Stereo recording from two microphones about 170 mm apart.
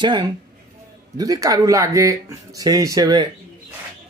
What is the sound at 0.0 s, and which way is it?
Speech, 25° right (ahead or behind).